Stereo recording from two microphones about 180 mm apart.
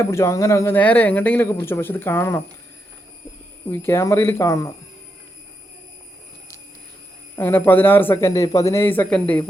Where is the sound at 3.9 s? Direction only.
15° left (ahead or behind).